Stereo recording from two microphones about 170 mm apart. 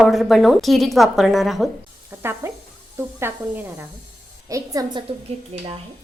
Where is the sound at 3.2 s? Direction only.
15° right (ahead or behind).